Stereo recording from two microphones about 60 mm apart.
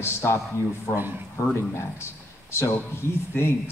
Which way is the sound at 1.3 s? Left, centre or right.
Left.